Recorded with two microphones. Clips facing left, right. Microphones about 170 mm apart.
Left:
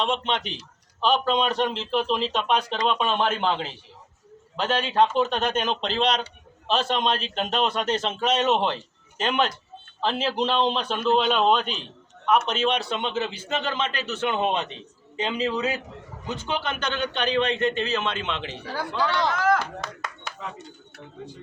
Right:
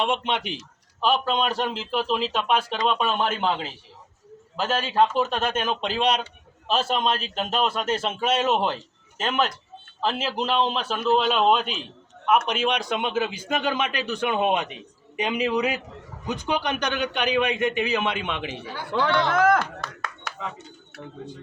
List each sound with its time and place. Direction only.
0.0 s a man's voice: 10° right (ahead or behind)
18.9 s speech: 60° right (ahead or behind)